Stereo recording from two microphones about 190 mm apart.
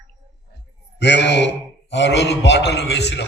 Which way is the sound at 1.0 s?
65° left (ahead or behind).